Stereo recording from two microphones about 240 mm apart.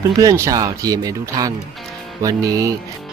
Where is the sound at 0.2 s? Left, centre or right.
Centre.